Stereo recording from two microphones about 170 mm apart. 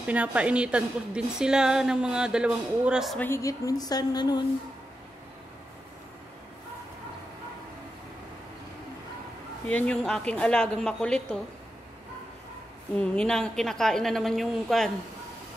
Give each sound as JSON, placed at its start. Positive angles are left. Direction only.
{"t": 0.0, "sound": "a woman's voice", "side_deg": -10}
{"t": 3.2, "sound": "a woman's voice", "side_deg": 15}
{"t": 9.7, "sound": "speech", "side_deg": 5}
{"t": 12.9, "sound": "a woman's voice", "side_deg": 5}